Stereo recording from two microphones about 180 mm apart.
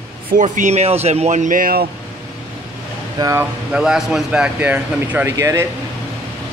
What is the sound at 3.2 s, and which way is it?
Speech, 15° right (ahead or behind).